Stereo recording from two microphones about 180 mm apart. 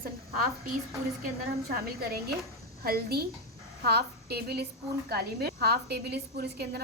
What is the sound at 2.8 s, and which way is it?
A woman's voice, 60° right (ahead or behind).